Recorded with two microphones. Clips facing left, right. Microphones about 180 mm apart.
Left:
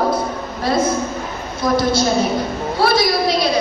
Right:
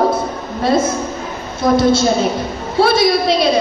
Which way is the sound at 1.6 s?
25° right (ahead or behind).